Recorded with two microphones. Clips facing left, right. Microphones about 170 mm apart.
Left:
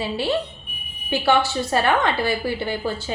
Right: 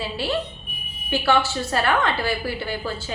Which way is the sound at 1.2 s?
20° left (ahead or behind).